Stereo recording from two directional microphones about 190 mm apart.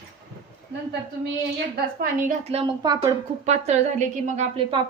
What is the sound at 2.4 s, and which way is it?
Speech, 30° right (ahead or behind).